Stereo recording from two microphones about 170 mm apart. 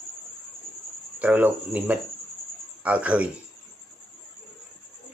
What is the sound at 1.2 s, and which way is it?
Speech, 10° right (ahead or behind).